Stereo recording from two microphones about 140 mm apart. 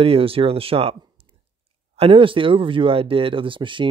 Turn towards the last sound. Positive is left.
turn(degrees=-35)  # may be behind; listen again after turning